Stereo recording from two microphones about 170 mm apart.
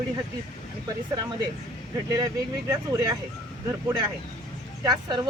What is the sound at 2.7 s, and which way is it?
Speech, 20° right (ahead or behind).